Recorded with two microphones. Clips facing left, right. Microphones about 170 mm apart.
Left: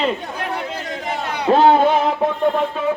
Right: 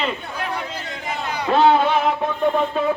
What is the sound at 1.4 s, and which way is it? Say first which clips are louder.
Speech: left 3 dB; 40° left (ahead or behind).